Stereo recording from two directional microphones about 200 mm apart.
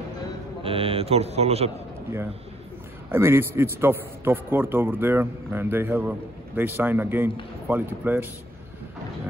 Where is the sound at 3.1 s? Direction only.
10° right (ahead or behind).